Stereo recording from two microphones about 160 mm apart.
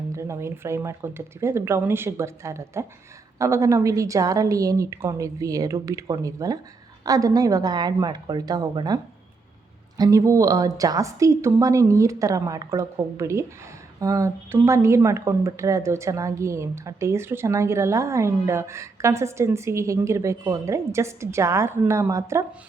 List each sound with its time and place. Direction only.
0.1 s a woman's voice: 15° right (ahead or behind)
10.0 s a woman's voice: 20° right (ahead or behind)